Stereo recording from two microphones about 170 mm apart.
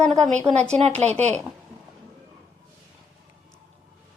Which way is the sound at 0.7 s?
40° right (ahead or behind).